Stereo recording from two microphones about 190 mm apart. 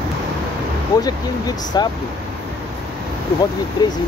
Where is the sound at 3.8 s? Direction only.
20° left (ahead or behind).